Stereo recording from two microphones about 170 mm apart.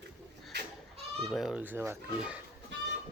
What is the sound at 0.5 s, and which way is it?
Goat, 80° right.